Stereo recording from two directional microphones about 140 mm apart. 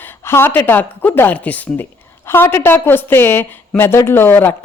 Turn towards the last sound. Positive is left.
turn(degrees=15)  # may be behind; listen again after turning